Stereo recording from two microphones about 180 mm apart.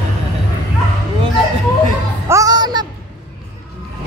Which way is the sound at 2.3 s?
20° right (ahead or behind).